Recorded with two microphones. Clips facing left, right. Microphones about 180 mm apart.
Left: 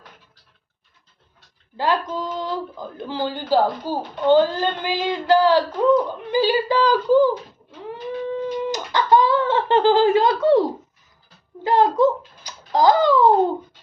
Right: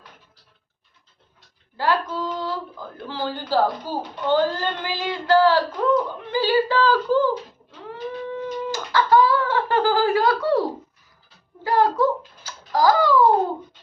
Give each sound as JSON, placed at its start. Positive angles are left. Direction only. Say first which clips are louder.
{"t": 1.7, "sound": "speech", "louder": "left 1 dB", "side_deg": 20}
{"t": 7.9, "sound": "a sound", "louder": "left 3 dB", "side_deg": 15}
{"t": 11.6, "sound": "tick-tock", "louder": "left 3 dB", "side_deg": 20}